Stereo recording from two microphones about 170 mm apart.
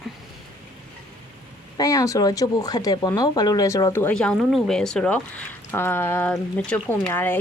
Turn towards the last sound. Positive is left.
turn(degrees=10)  # may be behind; listen again after turning